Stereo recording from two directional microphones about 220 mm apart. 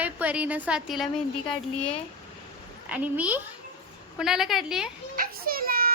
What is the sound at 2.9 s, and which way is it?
A woman's voice, 5° right (ahead or behind).